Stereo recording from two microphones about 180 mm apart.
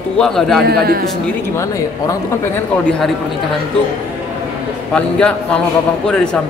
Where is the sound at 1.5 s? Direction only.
20° left (ahead or behind).